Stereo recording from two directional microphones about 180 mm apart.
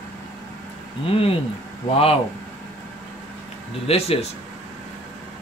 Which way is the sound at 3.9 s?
35° left (ahead or behind).